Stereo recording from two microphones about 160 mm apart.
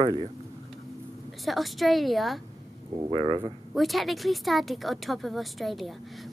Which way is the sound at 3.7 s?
Centre (ahead or behind).